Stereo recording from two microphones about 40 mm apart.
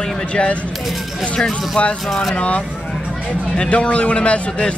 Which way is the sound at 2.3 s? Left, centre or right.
Left.